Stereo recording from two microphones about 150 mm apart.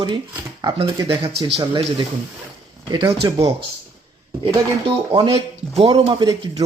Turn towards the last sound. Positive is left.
turn(degrees=-25)  # may be behind; listen again after turning